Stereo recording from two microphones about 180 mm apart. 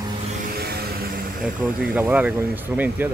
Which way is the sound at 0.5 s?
60° right (ahead or behind).